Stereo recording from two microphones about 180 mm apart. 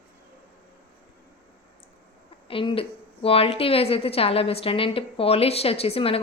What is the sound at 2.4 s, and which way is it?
A woman's voice, 30° left (ahead or behind).